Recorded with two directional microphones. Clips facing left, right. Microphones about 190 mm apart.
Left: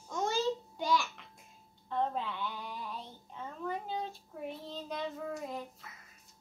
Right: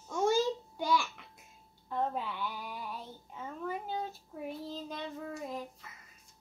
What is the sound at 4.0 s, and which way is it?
Child singing, 5° right (ahead or behind).